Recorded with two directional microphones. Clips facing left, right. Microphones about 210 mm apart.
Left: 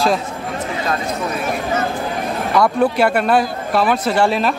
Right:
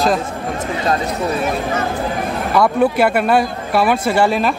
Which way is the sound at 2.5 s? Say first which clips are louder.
Right 1 dB; 5° right (ahead or behind).